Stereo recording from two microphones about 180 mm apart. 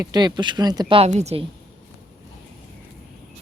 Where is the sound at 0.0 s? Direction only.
25° right (ahead or behind).